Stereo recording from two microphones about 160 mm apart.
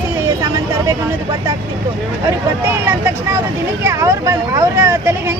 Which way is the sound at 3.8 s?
20° right (ahead or behind).